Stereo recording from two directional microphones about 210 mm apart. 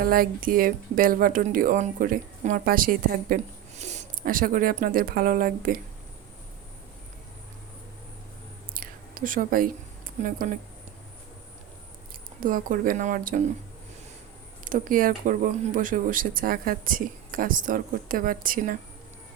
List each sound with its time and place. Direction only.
0.0 s speech: 45° right (ahead or behind)
8.7 s whispering: 40° right (ahead or behind)
10.2 s speech: 40° right (ahead or behind)
12.4 s speech: 40° right (ahead or behind)
14.6 s speech: 40° right (ahead or behind)